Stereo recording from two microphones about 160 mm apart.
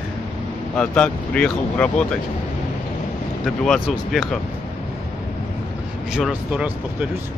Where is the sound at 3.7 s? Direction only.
Centre (ahead or behind).